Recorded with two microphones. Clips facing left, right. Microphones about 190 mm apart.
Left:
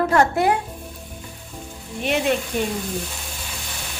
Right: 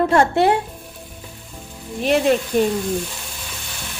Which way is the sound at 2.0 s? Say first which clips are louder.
Right 5 dB; 35° right (ahead or behind).